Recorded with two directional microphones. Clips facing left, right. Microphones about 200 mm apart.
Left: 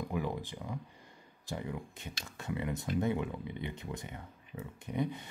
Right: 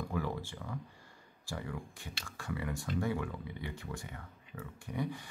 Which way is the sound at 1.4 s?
20° left (ahead or behind).